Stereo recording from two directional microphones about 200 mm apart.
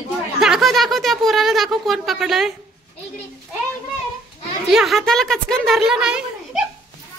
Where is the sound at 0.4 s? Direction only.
Centre (ahead or behind).